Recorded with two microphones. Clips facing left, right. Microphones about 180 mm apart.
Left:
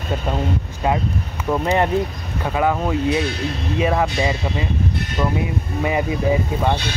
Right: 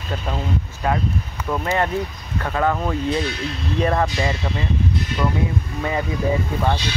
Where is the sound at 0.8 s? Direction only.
20° left (ahead or behind).